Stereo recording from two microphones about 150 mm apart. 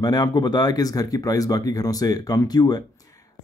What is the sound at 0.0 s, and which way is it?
Speech, 25° left (ahead or behind).